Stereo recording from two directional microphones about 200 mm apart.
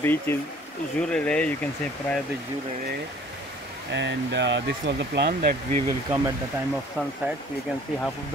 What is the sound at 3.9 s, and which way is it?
Speech, 60° right (ahead or behind).